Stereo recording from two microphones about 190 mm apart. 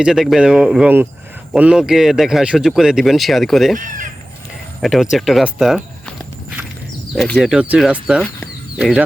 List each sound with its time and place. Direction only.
0.0 s speech: centre (ahead or behind)
3.8 s fowl: 45° right (ahead or behind)
4.8 s speech: centre (ahead or behind)
7.2 s speech: centre (ahead or behind)